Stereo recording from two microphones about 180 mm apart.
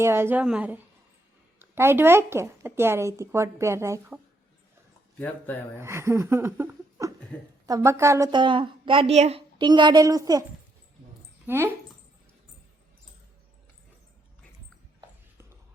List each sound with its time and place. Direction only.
0.0 s a woman's voice: 15° right (ahead or behind)
5.8 s a woman's voice: 15° right (ahead or behind)
7.3 s a woman's voice: 5° left (ahead or behind)
7.7 s a woman's voice: 15° right (ahead or behind)
11.4 s speech: 15° right (ahead or behind)